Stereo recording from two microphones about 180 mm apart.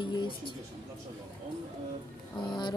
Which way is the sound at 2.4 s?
25° left (ahead or behind).